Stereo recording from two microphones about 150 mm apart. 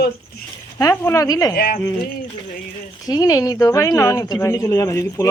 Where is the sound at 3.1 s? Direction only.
25° left (ahead or behind).